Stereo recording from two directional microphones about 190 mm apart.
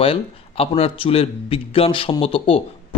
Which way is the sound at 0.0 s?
30° left (ahead or behind).